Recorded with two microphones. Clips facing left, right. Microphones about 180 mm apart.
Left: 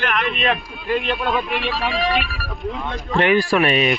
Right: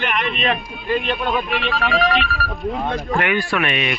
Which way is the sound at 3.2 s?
35° left (ahead or behind).